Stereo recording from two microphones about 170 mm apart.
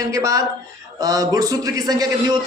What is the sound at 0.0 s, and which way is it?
A man's voice, 20° right (ahead or behind).